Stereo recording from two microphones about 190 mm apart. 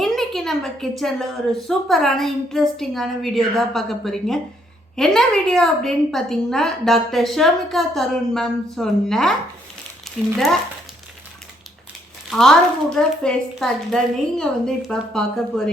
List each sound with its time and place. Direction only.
0.0 s a woman's voice: centre (ahead or behind)
12.3 s a woman's voice: centre (ahead or behind)